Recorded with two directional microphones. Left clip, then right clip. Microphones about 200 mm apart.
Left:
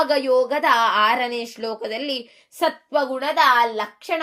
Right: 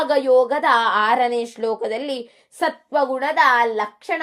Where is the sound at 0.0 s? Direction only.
15° right (ahead or behind).